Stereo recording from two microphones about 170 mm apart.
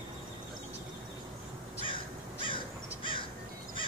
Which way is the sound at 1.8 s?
30° left (ahead or behind).